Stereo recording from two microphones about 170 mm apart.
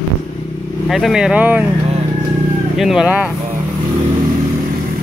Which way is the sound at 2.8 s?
5° right (ahead or behind).